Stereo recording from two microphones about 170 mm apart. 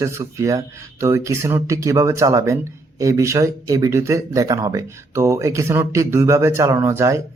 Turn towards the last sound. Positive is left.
turn(degrees=-15)  # may be behind; listen again after turning